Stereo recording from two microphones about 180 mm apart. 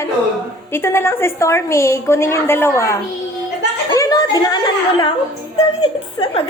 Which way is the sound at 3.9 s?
20° left (ahead or behind).